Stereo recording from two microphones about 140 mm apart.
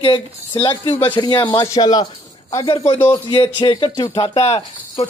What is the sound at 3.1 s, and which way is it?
Speech, 35° left (ahead or behind).